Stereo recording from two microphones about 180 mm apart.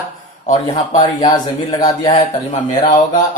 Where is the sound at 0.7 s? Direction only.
25° left (ahead or behind).